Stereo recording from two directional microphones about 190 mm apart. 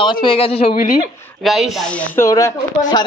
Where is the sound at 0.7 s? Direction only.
50° left (ahead or behind).